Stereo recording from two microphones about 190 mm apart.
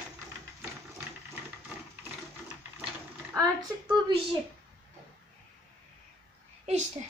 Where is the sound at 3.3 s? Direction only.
20° right (ahead or behind).